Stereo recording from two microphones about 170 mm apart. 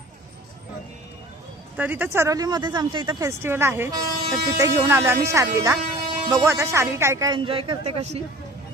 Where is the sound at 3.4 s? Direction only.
15° right (ahead or behind); by 8.2 s 35° right (ahead or behind).